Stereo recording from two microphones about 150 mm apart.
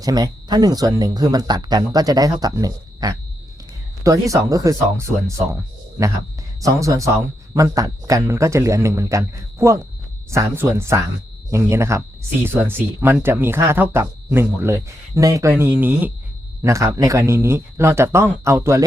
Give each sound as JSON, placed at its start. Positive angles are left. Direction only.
{"t": 0.0, "sound": "speech", "side_deg": -25}